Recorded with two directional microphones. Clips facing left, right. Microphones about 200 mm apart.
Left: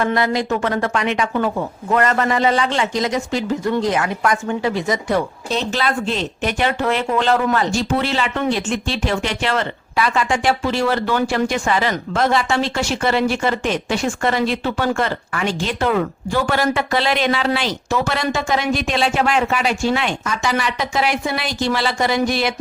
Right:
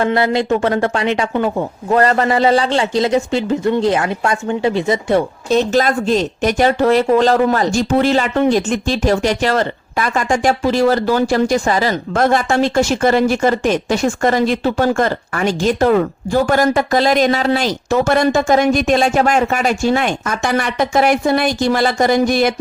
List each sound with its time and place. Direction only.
0.0 s speech: 30° right (ahead or behind)
5.5 s speech: 45° right (ahead or behind)